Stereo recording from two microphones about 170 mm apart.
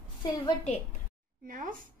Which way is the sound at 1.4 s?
55° right (ahead or behind).